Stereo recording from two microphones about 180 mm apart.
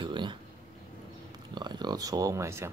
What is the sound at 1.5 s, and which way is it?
Speech, 25° right (ahead or behind).